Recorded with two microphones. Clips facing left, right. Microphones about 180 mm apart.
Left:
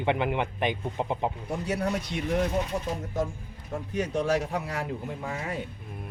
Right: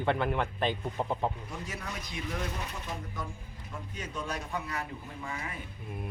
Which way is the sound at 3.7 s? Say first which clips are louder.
Left 11 dB; 75° left (ahead or behind).